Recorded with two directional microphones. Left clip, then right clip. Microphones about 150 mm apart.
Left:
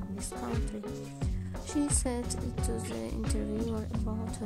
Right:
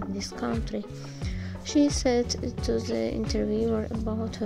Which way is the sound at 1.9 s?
20° right (ahead or behind).